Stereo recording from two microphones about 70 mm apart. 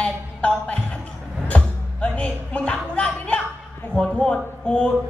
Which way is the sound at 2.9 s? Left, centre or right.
Centre.